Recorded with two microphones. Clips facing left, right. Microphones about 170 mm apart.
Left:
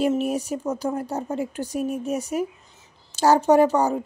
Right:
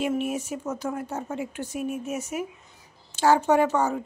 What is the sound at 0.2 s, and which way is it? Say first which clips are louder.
Speech: left 4 dB; 35° left (ahead or behind).